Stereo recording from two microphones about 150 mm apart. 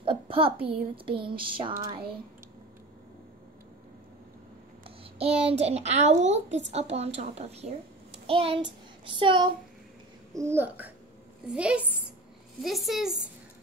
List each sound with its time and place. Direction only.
0.0 s a sound: 35° right (ahead or behind)
1.7 s speech: 20° right (ahead or behind)
4.8 s a child's voice: 40° right (ahead or behind)
8.3 s child singing: 35° right (ahead or behind)
10.3 s a child's voice: 15° right (ahead or behind); by 13.1 s centre (ahead or behind)